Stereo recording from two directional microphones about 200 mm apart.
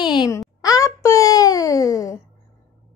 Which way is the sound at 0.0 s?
20° left (ahead or behind).